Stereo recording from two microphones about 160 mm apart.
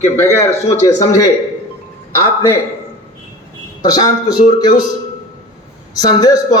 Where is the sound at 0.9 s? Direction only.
20° left (ahead or behind).